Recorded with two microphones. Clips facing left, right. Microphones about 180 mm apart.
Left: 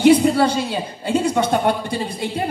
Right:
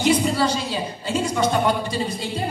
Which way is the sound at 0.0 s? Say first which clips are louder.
Left 6 dB; 60° left (ahead or behind).